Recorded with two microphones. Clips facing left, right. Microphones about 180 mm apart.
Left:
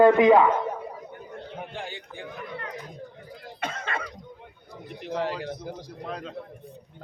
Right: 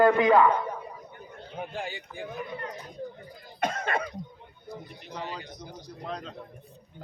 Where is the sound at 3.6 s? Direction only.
45° right (ahead or behind).